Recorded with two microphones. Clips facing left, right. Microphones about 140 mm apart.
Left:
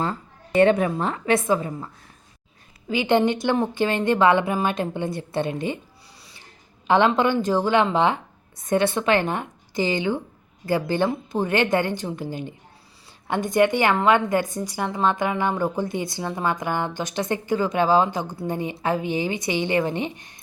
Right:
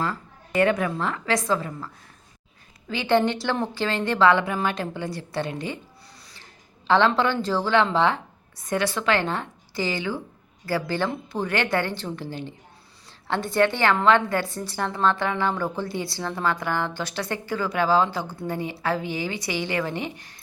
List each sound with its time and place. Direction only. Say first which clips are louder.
0.0 s a woman's voice: left 2 dB; 25° left (ahead or behind)
2.9 s speech: left 2 dB; 15° left (ahead or behind)
6.8 s a woman's voice: left 2 dB; 15° left (ahead or behind)